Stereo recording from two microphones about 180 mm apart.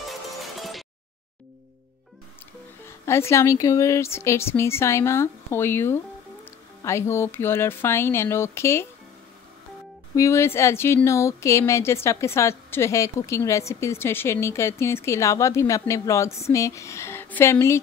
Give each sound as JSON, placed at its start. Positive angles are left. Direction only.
{"t": 0.6, "sound": "music", "side_deg": 0}
{"t": 2.8, "sound": "speech", "side_deg": 15}
{"t": 10.1, "sound": "speech", "side_deg": 15}